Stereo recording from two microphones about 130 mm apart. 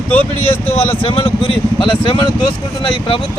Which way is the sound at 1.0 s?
45° left (ahead or behind).